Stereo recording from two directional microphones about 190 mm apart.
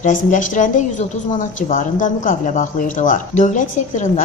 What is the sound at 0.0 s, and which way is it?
Speech, 40° left (ahead or behind).